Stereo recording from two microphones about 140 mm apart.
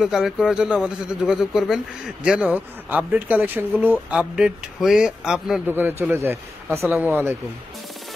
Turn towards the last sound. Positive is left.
turn(degrees=-15)  # may be behind; listen again after turning